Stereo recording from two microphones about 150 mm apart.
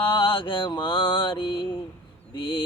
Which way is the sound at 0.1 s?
35° left (ahead or behind).